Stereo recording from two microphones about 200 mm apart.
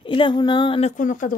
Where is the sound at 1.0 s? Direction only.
40° left (ahead or behind).